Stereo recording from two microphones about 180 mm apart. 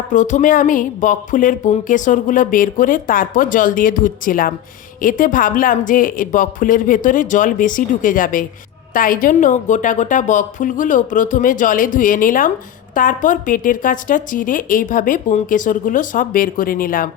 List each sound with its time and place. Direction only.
0.1 s a woman's voice: 45° left (ahead or behind)